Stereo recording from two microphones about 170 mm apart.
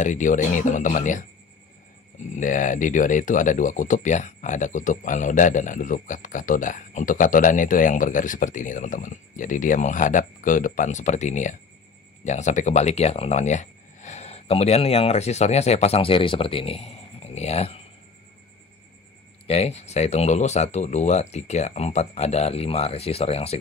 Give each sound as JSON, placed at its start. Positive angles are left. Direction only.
{"t": 0.0, "sound": "speech", "side_deg": 50}
{"t": 2.3, "sound": "speech", "side_deg": 50}
{"t": 19.4, "sound": "speech", "side_deg": 40}